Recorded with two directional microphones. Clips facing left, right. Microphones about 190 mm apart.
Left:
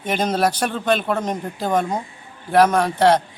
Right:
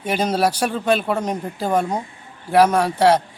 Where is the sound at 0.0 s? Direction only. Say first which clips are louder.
Even; 10° right (ahead or behind).